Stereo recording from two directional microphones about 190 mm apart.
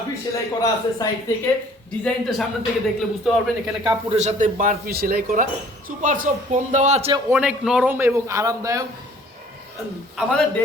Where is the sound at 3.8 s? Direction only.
35° right (ahead or behind).